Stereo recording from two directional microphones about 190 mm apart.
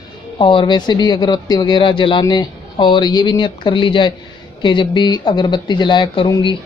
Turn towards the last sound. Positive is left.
turn(degrees=25)  # may be behind; listen again after turning